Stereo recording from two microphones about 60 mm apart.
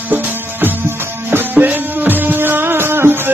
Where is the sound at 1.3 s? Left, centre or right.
Right.